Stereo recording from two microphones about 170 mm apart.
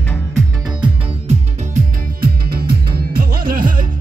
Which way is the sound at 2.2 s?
65° right (ahead or behind).